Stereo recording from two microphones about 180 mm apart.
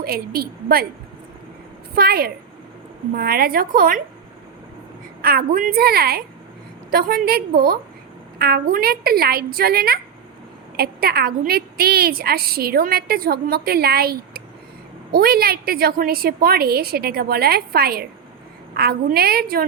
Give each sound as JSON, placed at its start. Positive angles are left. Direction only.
{"t": 0.0, "sound": "a woman's voice", "side_deg": -55}
{"t": 2.0, "sound": "a woman's voice", "side_deg": -60}
{"t": 5.2, "sound": "a woman's voice", "side_deg": -55}